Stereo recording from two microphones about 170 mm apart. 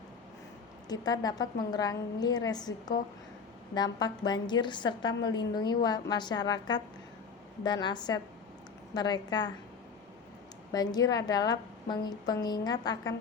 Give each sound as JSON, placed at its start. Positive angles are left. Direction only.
{"t": 0.9, "sound": "a woman's voice", "side_deg": 25}
{"t": 10.7, "sound": "a woman's voice", "side_deg": 20}